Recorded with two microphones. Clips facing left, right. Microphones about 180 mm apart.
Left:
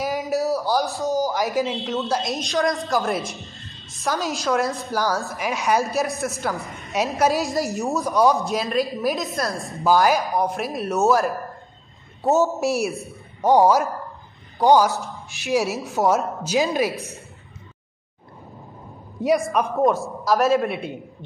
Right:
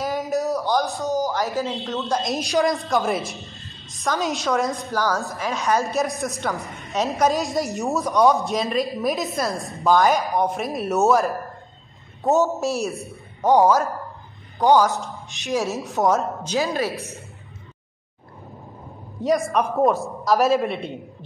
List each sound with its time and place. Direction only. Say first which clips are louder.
0.0 s a sound: left 1 dB; 5° left (ahead or behind)
1.3 s speech: left 2 dB; 15° left (ahead or behind)
2.0 s a woman's voice: right 1 dB; 5° left (ahead or behind)
16.5 s speech: left 3 dB; 15° left (ahead or behind)
19.4 s a woman's voice: even; centre (ahead or behind)